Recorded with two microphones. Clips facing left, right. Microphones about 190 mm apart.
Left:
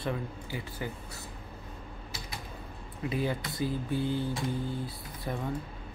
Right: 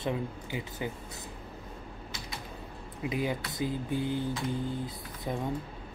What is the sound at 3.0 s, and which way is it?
Speech, 15° right (ahead or behind).